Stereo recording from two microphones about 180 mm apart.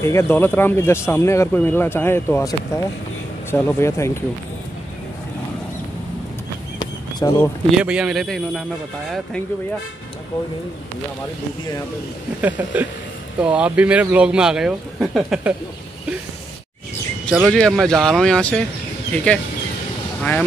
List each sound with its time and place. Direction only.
0.0 s speech: 15° left (ahead or behind)
6.8 s a sound: 25° left (ahead or behind)
7.7 s speech: 5° right (ahead or behind)
12.4 s a sound: 10° right (ahead or behind)
13.4 s speech: 5° right (ahead or behind)
17.5 s speech: 5° left (ahead or behind)